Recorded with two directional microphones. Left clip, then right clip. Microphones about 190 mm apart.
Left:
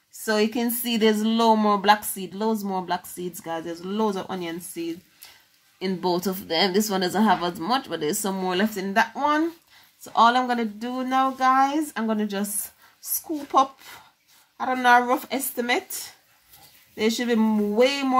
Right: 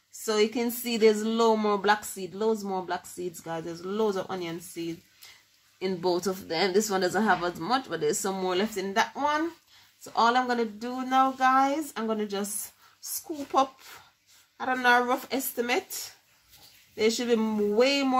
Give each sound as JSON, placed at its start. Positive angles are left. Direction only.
{"t": 0.2, "sound": "a woman's voice", "side_deg": 30}